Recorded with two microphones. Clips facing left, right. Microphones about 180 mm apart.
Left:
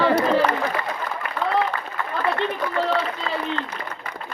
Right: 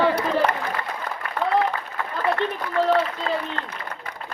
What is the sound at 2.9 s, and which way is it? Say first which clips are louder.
Speech: right 2 dB; 50° right (ahead or behind).